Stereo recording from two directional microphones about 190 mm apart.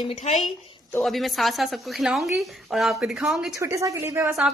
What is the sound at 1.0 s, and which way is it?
A woman's voice, centre (ahead or behind).